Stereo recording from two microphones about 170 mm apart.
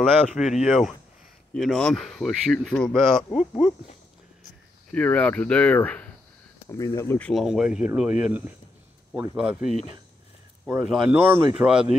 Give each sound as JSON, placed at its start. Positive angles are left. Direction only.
{"t": 0.4, "sound": "speech", "side_deg": -5}
{"t": 4.9, "sound": "speech", "side_deg": 10}
{"t": 9.6, "sound": "speech", "side_deg": 40}
{"t": 10.7, "sound": "speech", "side_deg": -5}